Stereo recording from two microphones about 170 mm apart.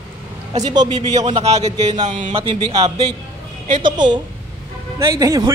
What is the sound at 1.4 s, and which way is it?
Speech, 40° right (ahead or behind).